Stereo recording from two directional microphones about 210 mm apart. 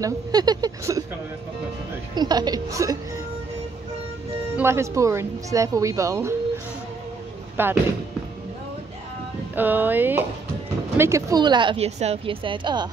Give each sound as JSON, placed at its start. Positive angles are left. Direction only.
{"t": 0.0, "sound": "a woman's voice", "side_deg": -20}
{"t": 2.1, "sound": "speech", "side_deg": -20}
{"t": 4.6, "sound": "a woman's voice", "side_deg": -10}
{"t": 7.6, "sound": "a woman's voice", "side_deg": -10}
{"t": 9.6, "sound": "a woman's voice", "side_deg": -10}